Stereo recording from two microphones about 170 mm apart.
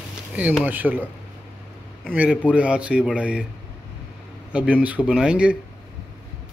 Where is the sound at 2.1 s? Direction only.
10° right (ahead or behind).